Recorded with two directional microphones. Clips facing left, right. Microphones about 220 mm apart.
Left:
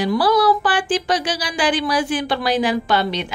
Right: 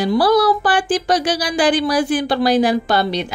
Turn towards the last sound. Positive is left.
turn(degrees=-40)  # may be behind; listen again after turning